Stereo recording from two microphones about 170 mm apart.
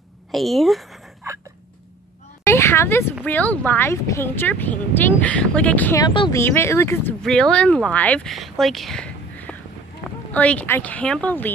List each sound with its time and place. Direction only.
0.3 s speech: centre (ahead or behind)
2.4 s a sound: 15° left (ahead or behind)
3.3 s speech: 10° left (ahead or behind)
5.9 s speech: 25° left (ahead or behind)
6.3 s speech: 15° left (ahead or behind)